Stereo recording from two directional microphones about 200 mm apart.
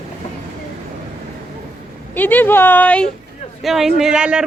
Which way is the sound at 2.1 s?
10° left (ahead or behind).